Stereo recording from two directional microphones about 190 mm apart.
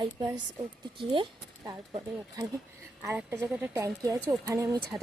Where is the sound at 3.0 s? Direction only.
10° right (ahead or behind).